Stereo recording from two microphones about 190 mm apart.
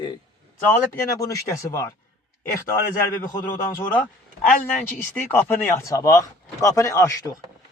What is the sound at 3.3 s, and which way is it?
Speech, 20° left (ahead or behind).